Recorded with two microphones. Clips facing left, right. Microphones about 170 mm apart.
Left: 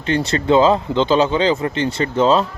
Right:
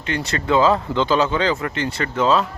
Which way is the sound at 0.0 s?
30° left (ahead or behind).